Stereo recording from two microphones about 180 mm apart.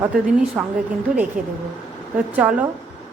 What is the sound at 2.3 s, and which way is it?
Speech, 10° right (ahead or behind).